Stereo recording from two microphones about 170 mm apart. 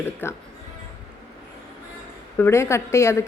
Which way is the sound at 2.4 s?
15° left (ahead or behind).